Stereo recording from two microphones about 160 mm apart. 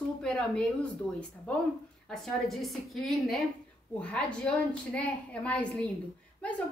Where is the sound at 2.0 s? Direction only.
Centre (ahead or behind).